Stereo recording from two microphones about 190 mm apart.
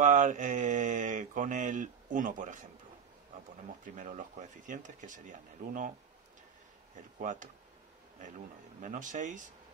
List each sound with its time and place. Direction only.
0.0 s mantra: 40° right (ahead or behind)
3.8 s speech: 40° right (ahead or behind)
7.2 s speech: 40° right (ahead or behind)
8.8 s mantra: 40° right (ahead or behind)